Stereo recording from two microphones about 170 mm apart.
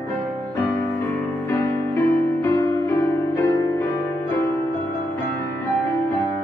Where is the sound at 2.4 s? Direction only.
15° left (ahead or behind).